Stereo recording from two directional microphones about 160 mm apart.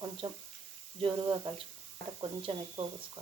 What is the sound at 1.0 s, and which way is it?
Speech, 30° right (ahead or behind).